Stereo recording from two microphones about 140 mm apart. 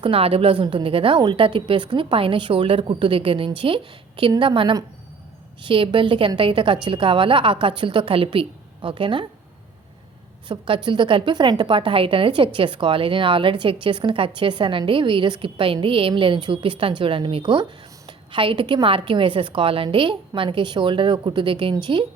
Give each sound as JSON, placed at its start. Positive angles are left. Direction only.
{"t": 0.0, "sound": "a woman's voice", "side_deg": -40}
{"t": 10.5, "sound": "a woman's voice", "side_deg": -35}